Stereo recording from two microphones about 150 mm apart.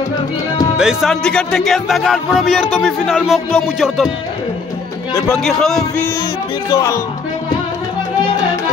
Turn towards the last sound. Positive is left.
turn(degrees=20)  # may be behind; listen again after turning